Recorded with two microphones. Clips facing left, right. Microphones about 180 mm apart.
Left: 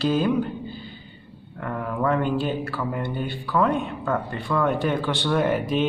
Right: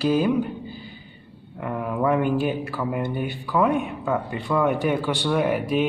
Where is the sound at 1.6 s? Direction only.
15° right (ahead or behind).